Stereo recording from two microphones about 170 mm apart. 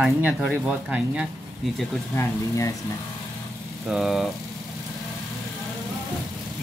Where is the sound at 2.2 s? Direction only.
20° left (ahead or behind).